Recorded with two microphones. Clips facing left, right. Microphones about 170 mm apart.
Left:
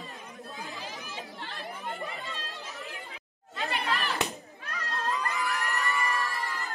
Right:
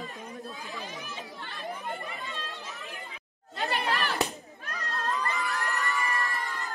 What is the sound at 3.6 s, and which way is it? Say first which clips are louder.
Chatter: right 2 dB; 40° right (ahead or behind).